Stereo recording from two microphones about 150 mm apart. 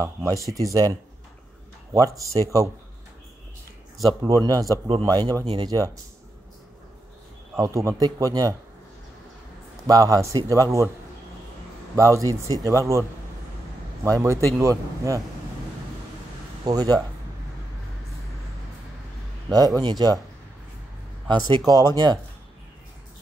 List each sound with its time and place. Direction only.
0.0 s a man's voice: 20° right (ahead or behind)
2.0 s a man's voice: 20° right (ahead or behind)
4.2 s a man's voice: 25° right (ahead or behind)
7.6 s a man's voice: 20° right (ahead or behind)
9.8 s a man's voice: 25° right (ahead or behind)
11.9 s a man's voice: 20° right (ahead or behind)
14.0 s a man's voice: 20° right (ahead or behind)
16.6 s a man's voice: 25° right (ahead or behind)
19.5 s a man's voice: 25° right (ahead or behind)
21.3 s a man's voice: 25° right (ahead or behind)